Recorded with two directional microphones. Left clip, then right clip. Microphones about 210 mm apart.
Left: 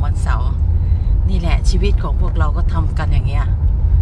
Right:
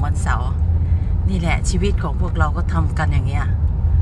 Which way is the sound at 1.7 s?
10° right (ahead or behind).